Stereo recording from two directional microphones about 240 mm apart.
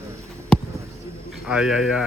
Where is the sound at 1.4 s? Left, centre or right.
Centre.